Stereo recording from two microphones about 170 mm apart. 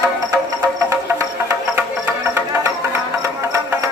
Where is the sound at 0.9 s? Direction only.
20° right (ahead or behind).